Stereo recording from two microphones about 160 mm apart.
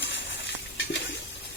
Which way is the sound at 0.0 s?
90° left.